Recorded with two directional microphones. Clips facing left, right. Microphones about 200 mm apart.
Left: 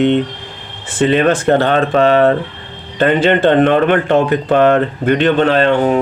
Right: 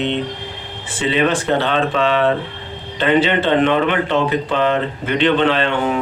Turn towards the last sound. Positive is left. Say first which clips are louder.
# left 6 dB
turn(degrees=40)  # may be behind; listen again after turning